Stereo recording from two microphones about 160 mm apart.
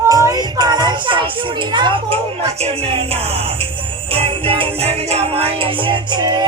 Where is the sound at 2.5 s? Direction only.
40° right (ahead or behind).